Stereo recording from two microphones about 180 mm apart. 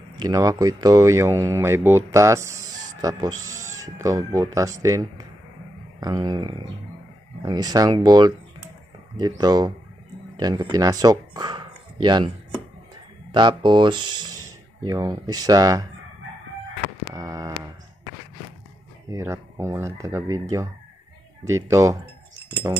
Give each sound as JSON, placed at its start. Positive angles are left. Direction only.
{"t": 0.2, "sound": "speech", "side_deg": -20}
{"t": 13.3, "sound": "speech", "side_deg": -25}
{"t": 17.1, "sound": "speech", "side_deg": -20}
{"t": 19.0, "sound": "speech", "side_deg": -15}
{"t": 21.5, "sound": "speech", "side_deg": -15}